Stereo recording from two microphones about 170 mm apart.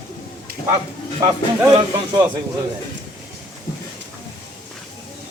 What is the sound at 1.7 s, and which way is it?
Speech, 25° right (ahead or behind).